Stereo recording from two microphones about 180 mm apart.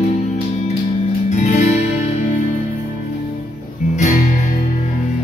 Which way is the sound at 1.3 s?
40° left (ahead or behind).